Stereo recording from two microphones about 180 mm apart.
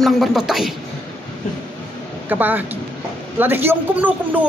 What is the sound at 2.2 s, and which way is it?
A woman's voice, 10° right (ahead or behind).